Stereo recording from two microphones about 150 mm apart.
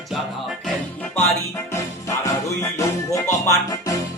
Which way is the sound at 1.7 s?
20° left (ahead or behind).